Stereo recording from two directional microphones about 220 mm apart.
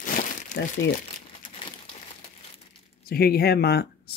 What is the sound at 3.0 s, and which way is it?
Speech, 45° left (ahead or behind).